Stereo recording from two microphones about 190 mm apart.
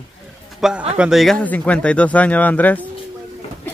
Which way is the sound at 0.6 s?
5° right (ahead or behind).